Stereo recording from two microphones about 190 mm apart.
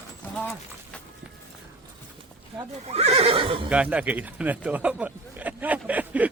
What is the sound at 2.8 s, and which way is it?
Neigh, 35° right (ahead or behind).